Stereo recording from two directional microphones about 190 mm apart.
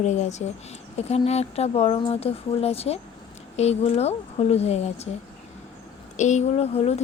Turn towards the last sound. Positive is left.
turn(degrees=35)  # may be behind; listen again after turning